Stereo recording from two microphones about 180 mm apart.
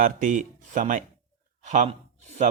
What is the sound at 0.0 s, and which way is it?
Speech, 45° right (ahead or behind).